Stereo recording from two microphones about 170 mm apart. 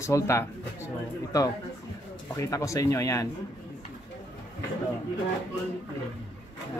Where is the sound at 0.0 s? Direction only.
15° left (ahead or behind).